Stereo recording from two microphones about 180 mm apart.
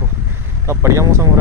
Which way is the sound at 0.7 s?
15° right (ahead or behind).